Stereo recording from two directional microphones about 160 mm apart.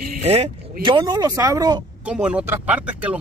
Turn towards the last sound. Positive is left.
turn(degrees=-10)  # may be behind; listen again after turning